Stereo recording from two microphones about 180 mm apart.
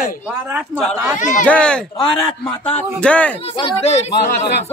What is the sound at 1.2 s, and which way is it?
Speech, 45° left (ahead or behind).